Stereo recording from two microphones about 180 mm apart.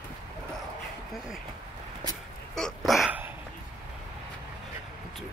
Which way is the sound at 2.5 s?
Centre (ahead or behind).